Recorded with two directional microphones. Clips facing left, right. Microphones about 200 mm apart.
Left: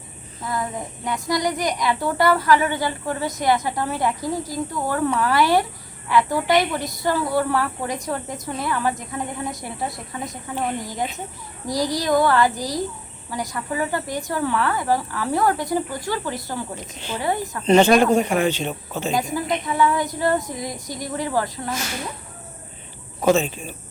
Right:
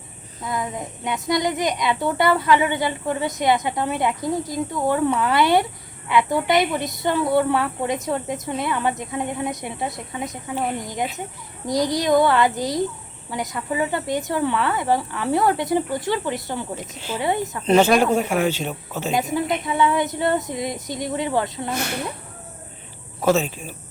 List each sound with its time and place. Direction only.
0.4 s speech: 20° right (ahead or behind)
6.3 s a woman's voice: centre (ahead or behind)
6.7 s speech: 20° right (ahead or behind)
10.2 s a woman's voice: 5° right (ahead or behind)
11.6 s speech: 20° right (ahead or behind)
17.7 s speech: 5° right (ahead or behind)
19.6 s speech: 20° right (ahead or behind)
21.7 s speech: 60° right (ahead or behind)
23.2 s a woman's voice: 5° right (ahead or behind)